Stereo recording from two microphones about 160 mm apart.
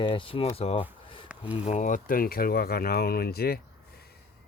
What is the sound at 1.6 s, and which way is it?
Speech, 50° left (ahead or behind).